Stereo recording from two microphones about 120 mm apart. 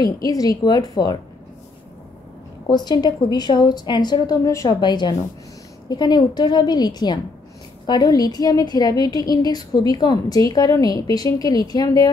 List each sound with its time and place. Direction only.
0.0 s a woman's voice: 30° left (ahead or behind)
2.6 s a woman's voice: 35° left (ahead or behind)